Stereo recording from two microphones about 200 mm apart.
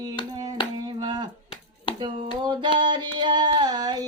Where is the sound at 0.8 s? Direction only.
20° right (ahead or behind).